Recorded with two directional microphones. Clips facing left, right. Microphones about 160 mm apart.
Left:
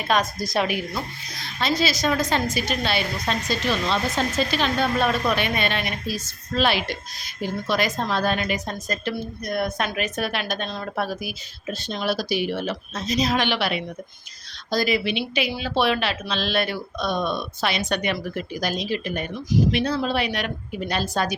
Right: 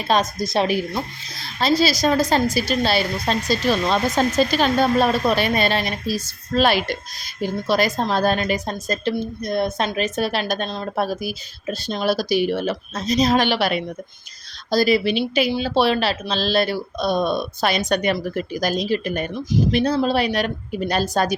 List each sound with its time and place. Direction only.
0.1 s a woman's voice: 25° right (ahead or behind); by 21.3 s 40° right (ahead or behind)